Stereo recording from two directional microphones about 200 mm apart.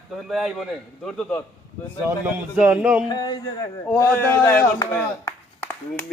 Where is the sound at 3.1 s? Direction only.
20° left (ahead or behind).